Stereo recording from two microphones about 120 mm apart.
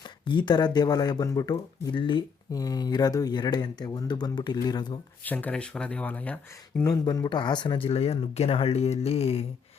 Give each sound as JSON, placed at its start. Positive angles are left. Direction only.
{"t": 0.0, "sound": "speech", "side_deg": 40}
{"t": 5.2, "sound": "speech", "side_deg": 15}
{"t": 6.8, "sound": "speech", "side_deg": 30}